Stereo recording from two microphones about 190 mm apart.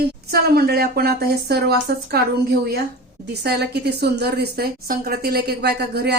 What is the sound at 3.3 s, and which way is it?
Speech, 60° right (ahead or behind).